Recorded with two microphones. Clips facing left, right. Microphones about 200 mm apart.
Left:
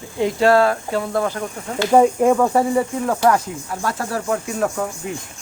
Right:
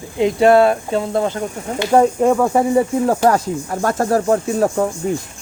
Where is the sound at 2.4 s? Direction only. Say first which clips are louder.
Right 2 dB; 15° right (ahead or behind).